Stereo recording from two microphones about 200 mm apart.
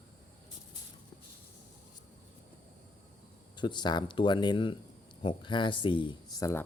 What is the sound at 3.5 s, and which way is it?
Speech, 20° left (ahead or behind).